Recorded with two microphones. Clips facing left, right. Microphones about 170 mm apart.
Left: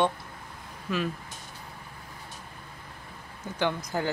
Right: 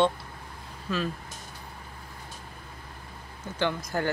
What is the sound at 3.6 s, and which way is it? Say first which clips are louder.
Speech: even; 15° left (ahead or behind).